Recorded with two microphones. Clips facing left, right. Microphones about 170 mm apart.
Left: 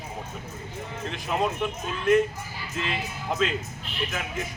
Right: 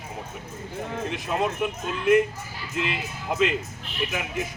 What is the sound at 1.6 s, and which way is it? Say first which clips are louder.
Speech: right 2 dB; 10° right (ahead or behind).